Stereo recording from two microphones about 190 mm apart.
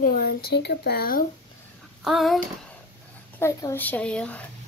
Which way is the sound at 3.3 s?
15° left (ahead or behind).